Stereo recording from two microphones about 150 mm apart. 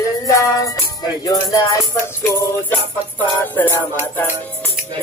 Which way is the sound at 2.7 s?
10° left (ahead or behind).